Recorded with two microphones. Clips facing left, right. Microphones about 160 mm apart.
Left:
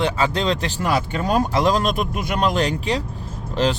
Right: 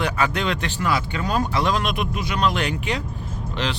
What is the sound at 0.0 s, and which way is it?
Speech, 30° left (ahead or behind).